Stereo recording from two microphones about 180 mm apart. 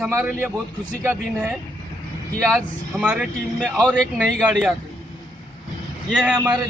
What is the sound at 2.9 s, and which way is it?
Speech, 5° right (ahead or behind).